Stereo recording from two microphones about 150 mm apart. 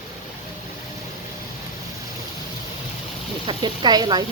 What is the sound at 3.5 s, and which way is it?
Speech, 30° right (ahead or behind).